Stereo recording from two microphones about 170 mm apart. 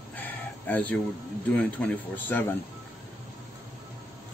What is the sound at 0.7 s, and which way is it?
A man's voice, 10° left (ahead or behind).